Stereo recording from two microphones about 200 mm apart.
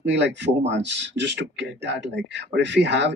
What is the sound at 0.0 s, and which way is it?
A man's voice, 60° right (ahead or behind).